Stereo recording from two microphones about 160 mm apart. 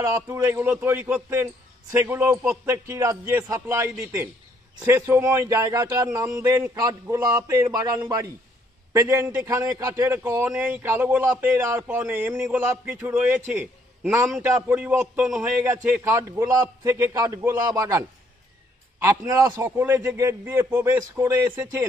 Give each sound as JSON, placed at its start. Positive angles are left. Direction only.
{"t": 0.0, "sound": "a man's voice", "side_deg": -15}